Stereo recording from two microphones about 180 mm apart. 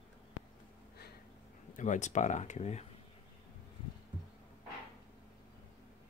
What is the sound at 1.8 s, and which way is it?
Speech, 45° left (ahead or behind).